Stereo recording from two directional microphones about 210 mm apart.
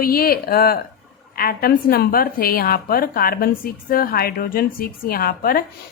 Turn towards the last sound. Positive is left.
turn(degrees=45)  # may be behind; listen again after turning